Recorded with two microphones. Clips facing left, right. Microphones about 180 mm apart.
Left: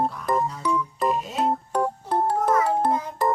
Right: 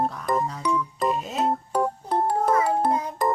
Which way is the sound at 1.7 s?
10° right (ahead or behind).